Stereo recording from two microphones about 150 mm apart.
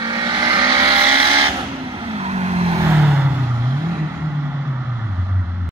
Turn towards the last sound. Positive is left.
turn(degrees=-15)  # may be behind; listen again after turning